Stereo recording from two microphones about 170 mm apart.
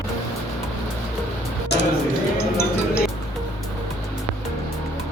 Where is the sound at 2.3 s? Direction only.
15° left (ahead or behind).